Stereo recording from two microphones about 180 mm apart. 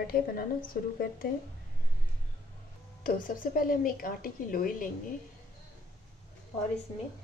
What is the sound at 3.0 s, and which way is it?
A woman's voice, 50° left (ahead or behind).